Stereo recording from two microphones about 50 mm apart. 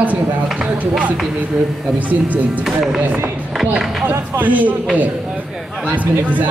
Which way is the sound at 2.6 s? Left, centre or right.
Centre.